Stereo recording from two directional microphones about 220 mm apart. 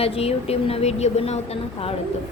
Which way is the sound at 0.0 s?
25° left (ahead or behind).